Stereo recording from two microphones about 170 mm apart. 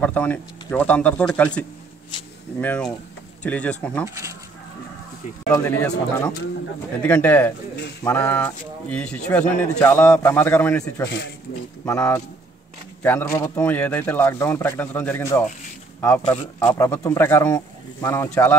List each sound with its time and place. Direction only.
0.0 s speech: 10° left (ahead or behind)
2.6 s speech: 10° left (ahead or behind)
4.0 s speech: 15° right (ahead or behind)
5.5 s speech: 15° left (ahead or behind)
11.1 s speech: 90° left
11.8 s speech: 15° left (ahead or behind)
16.7 s speech: 15° left (ahead or behind)